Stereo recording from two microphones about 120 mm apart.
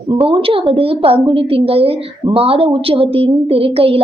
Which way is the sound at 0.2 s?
50° right (ahead or behind).